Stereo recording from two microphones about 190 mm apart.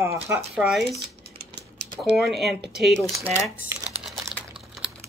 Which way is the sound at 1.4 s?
60° right (ahead or behind).